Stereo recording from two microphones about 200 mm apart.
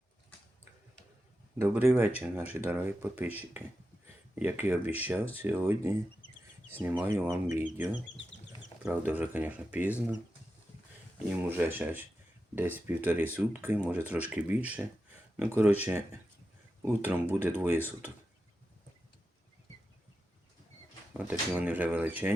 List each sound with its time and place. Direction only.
1.5 s speech: 10° right (ahead or behind)
4.0 s a sound: 10° right (ahead or behind)
4.9 s speech: 10° right (ahead or behind)
11.3 s speech: 10° right (ahead or behind)
16.8 s speech: 10° right (ahead or behind)
21.1 s speech: 5° right (ahead or behind)